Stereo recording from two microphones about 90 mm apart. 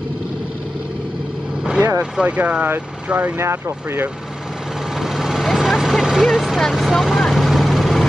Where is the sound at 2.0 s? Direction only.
15° right (ahead or behind).